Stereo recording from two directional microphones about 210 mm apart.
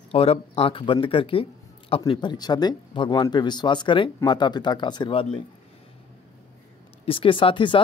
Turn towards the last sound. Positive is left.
turn(degrees=25)  # may be behind; listen again after turning